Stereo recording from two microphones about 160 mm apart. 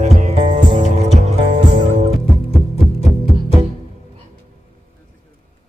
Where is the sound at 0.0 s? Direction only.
45° right (ahead or behind).